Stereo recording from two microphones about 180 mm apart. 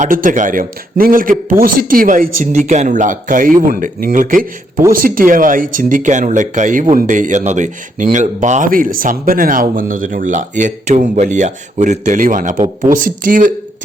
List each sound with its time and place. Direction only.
0.0 s speech: 50° right (ahead or behind)